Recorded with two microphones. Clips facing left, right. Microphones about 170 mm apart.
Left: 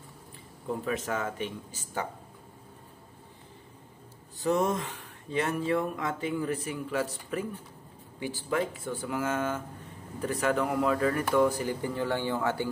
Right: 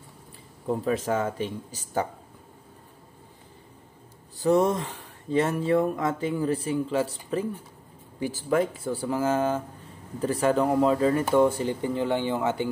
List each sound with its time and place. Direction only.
0.7 s speech: 35° right (ahead or behind)
4.4 s speech: 35° right (ahead or behind)
8.2 s speech: 40° right (ahead or behind); by 12.6 s 20° right (ahead or behind)